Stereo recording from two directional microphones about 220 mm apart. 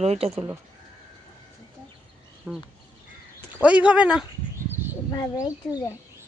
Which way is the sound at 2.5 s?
5° right (ahead or behind).